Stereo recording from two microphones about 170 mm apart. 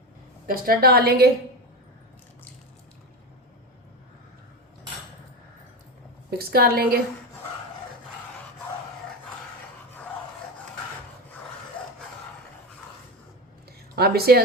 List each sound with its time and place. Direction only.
0.4 s a woman's voice: 60° right (ahead or behind)
6.5 s a woman's voice: 65° right (ahead or behind)
11.8 s a sound: 30° left (ahead or behind)
13.9 s a woman's voice: 65° right (ahead or behind)